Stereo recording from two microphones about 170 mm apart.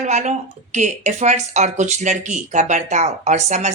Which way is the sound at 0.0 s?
45° right (ahead or behind).